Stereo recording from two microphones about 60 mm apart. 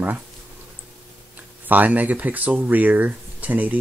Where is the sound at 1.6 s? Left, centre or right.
Right.